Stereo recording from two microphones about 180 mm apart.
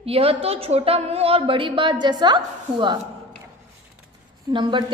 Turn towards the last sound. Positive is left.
turn(degrees=-25)  # may be behind; listen again after turning